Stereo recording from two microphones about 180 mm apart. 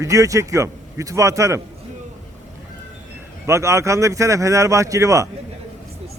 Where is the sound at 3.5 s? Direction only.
15° right (ahead or behind).